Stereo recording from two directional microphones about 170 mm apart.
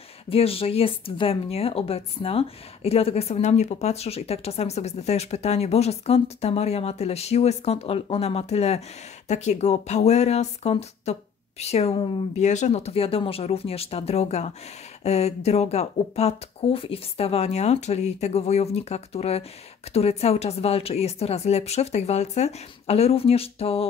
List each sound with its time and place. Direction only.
0.3 s speech: 35° left (ahead or behind)
12.4 s speech: 45° left (ahead or behind)